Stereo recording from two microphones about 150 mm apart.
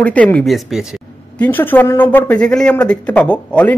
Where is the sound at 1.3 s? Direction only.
10° left (ahead or behind).